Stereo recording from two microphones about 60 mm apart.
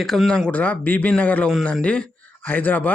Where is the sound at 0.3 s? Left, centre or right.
Centre.